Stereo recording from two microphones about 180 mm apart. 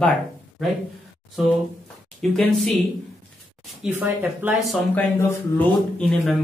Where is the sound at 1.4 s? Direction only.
Centre (ahead or behind).